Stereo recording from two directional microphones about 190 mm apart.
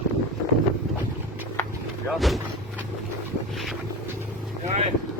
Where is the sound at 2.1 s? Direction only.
Centre (ahead or behind).